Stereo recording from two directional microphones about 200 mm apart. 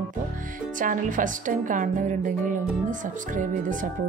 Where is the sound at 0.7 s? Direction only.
40° right (ahead or behind).